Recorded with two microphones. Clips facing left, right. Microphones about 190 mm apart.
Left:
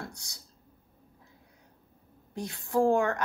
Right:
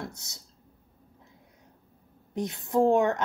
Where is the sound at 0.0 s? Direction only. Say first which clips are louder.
Right 3 dB; 20° right (ahead or behind).